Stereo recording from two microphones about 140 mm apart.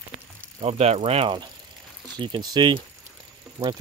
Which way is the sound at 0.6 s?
45° right (ahead or behind).